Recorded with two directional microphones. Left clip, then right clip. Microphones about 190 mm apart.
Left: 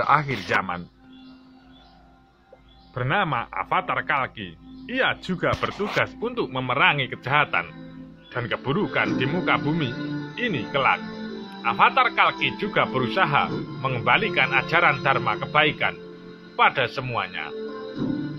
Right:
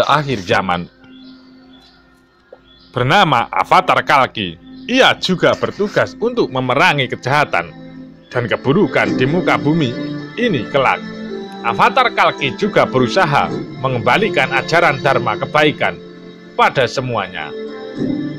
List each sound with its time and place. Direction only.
0.0 s speech: 30° right (ahead or behind); by 0.8 s 45° right (ahead or behind)
2.9 s a man's voice: 55° right (ahead or behind)
9.9 s music: 10° right (ahead or behind)
10.3 s a man's voice: 50° right (ahead or behind)
11.1 s music: 10° right (ahead or behind)
11.6 s a man's voice: 50° right (ahead or behind)
17.6 s music: 10° right (ahead or behind)